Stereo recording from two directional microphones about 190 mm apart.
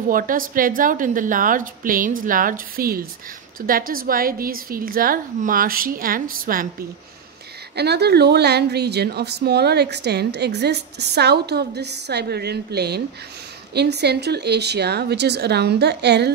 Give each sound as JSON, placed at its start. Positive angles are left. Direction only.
{"t": 0.1, "sound": "a woman's voice", "side_deg": -45}
{"t": 7.7, "sound": "a woman's voice", "side_deg": -60}